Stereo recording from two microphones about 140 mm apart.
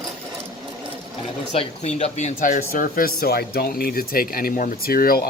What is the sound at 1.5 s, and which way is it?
Speech, 50° left (ahead or behind).